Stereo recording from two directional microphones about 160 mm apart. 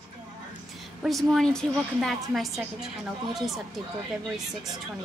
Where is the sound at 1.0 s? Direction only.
Centre (ahead or behind).